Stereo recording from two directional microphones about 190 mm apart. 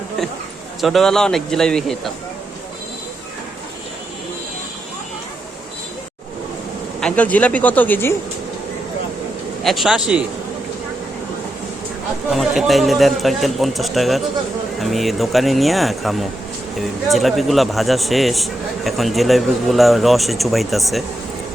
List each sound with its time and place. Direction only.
0.8 s speech: centre (ahead or behind)
7.0 s speech: 5° left (ahead or behind)
9.6 s speech: centre (ahead or behind)
12.3 s speech: centre (ahead or behind)